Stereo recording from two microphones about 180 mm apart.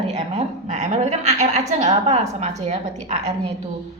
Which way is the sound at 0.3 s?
40° right (ahead or behind).